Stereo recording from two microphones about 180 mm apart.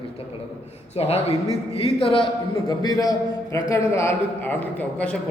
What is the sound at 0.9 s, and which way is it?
A man's voice, 35° left (ahead or behind).